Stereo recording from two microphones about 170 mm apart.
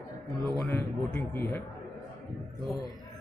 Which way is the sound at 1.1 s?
10° left (ahead or behind).